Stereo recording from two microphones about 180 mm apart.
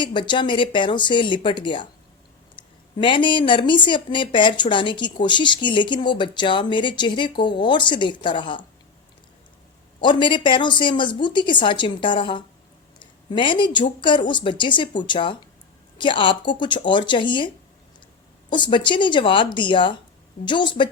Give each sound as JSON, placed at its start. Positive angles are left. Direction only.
{"t": 0.0, "sound": "speech", "side_deg": 25}
{"t": 10.0, "sound": "speech", "side_deg": 25}
{"t": 18.5, "sound": "speech", "side_deg": 25}